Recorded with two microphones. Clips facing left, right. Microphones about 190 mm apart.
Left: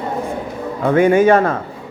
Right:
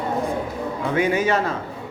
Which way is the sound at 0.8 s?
50° left (ahead or behind).